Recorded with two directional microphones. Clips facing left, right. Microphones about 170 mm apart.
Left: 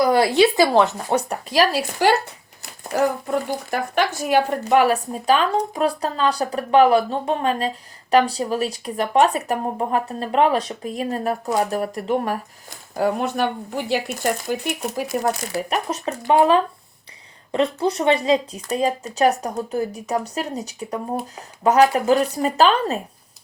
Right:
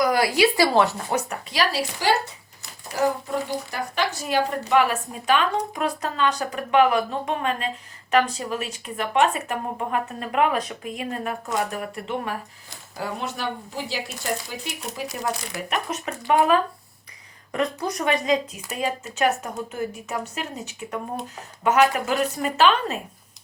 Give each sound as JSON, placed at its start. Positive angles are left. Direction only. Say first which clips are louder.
{"t": 0.0, "sound": "speech", "louder": "left 4 dB", "side_deg": 30}
{"t": 1.3, "sound": "speech", "louder": "left 6 dB", "side_deg": 45}
{"t": 3.7, "sound": "speech", "louder": "left 5 dB", "side_deg": 50}
{"t": 13.0, "sound": "speech", "louder": "left 9 dB", "side_deg": 55}
{"t": 15.5, "sound": "speech", "louder": "left 4 dB", "side_deg": 30}